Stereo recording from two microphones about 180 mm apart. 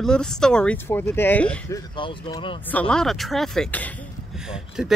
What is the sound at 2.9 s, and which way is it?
Speech, centre (ahead or behind).